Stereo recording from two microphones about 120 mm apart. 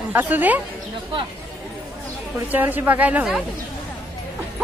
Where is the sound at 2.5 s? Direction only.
15° right (ahead or behind).